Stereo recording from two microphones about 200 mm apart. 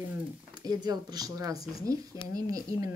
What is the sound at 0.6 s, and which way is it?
Speech, 20° right (ahead or behind).